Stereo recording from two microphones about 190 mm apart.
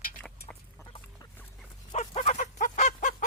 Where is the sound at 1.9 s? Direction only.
35° left (ahead or behind).